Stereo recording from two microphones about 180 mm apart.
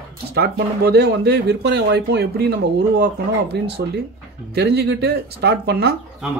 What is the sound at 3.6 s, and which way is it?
Speech, 70° right (ahead or behind).